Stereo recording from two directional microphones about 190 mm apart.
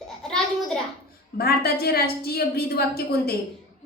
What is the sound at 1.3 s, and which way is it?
A woman's voice, 55° left (ahead or behind).